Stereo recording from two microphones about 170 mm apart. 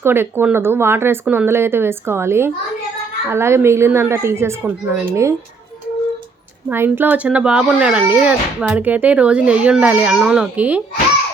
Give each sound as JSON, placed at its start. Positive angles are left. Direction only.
{"t": 0.0, "sound": "a child's voice", "side_deg": -15}
{"t": 6.7, "sound": "a child's voice", "side_deg": -10}